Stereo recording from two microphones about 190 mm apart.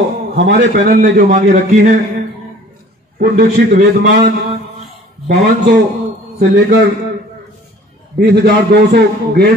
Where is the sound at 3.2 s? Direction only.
40° right (ahead or behind).